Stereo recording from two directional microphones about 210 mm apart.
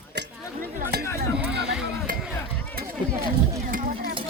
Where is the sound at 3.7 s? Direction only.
40° right (ahead or behind).